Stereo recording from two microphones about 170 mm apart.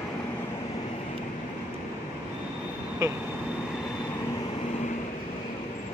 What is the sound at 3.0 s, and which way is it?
Speech, 20° right (ahead or behind).